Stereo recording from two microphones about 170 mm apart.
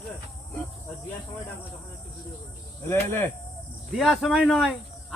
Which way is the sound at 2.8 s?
15° left (ahead or behind).